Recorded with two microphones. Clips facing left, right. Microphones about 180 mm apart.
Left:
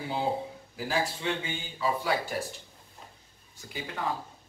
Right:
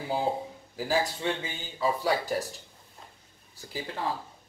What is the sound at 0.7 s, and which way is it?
Speech, 40° right (ahead or behind).